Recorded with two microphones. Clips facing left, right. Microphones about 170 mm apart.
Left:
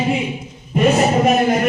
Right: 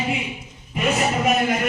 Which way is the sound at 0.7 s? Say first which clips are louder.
Left 7 dB; 40° left (ahead or behind).